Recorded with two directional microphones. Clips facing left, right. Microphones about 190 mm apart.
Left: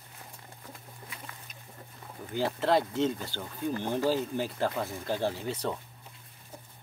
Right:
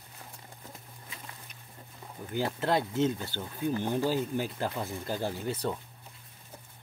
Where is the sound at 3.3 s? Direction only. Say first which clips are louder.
Right 2 dB; 15° right (ahead or behind).